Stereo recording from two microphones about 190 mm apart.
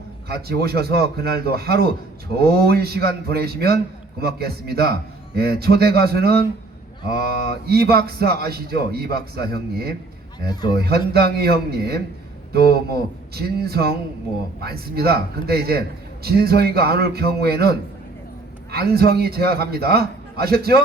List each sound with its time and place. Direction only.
0.3 s a man's voice: 55° right (ahead or behind)
10.4 s a man's voice: 20° left (ahead or behind)
10.8 s a man's voice: 55° right (ahead or behind)